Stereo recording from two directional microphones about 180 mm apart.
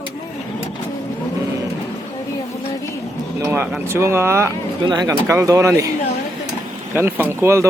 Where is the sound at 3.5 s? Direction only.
10° right (ahead or behind).